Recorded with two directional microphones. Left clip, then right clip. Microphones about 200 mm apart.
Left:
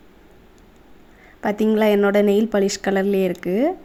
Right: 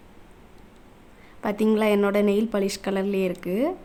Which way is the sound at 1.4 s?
10° left (ahead or behind).